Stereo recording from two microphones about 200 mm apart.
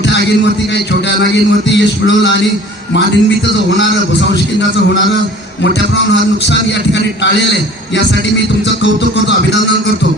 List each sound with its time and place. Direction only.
1.8 s a man's voice: 65° left (ahead or behind)
7.3 s a man's voice: 60° left (ahead or behind)